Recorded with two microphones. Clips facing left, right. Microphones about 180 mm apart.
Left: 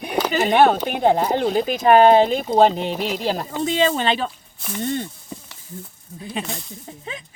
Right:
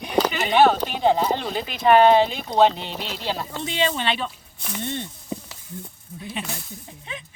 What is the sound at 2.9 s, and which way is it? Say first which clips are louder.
Speech: left 8 dB; 10° left (ahead or behind).